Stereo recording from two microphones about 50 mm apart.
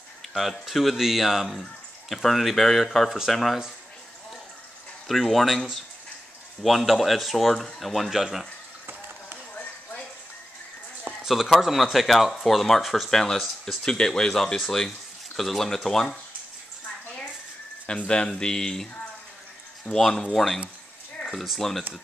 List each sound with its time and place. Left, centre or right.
0.3 s speech: centre
5.0 s speech: centre
11.2 s speech: centre
17.9 s speech: centre
20.0 s speech: centre
21.5 s speech: centre